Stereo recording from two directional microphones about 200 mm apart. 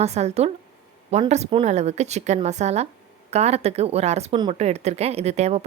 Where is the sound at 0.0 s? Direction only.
30° right (ahead or behind).